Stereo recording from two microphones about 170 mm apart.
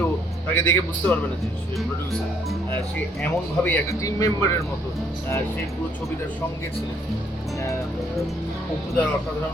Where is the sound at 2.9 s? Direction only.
10° left (ahead or behind).